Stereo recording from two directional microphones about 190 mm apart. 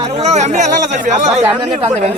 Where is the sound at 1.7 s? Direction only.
35° right (ahead or behind).